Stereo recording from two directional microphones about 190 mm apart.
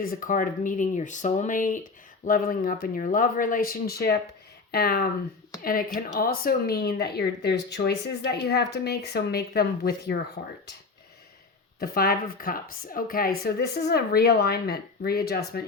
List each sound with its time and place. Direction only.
0.0 s speech: 50° left (ahead or behind)
11.8 s speech: 50° left (ahead or behind)